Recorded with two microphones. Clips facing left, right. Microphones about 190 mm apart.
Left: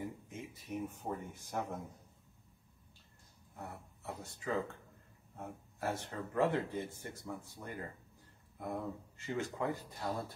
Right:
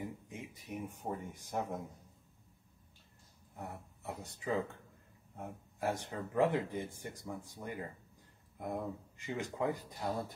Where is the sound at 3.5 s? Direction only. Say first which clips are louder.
Right 2 dB; 15° right (ahead or behind).